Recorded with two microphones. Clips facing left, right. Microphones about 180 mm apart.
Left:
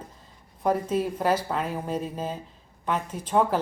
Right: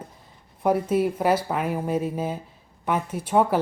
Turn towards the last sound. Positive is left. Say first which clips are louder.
# right 2 dB
turn(degrees=-10)  # may be behind; listen again after turning